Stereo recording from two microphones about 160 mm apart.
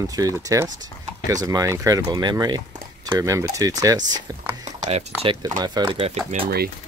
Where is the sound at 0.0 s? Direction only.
20° right (ahead or behind).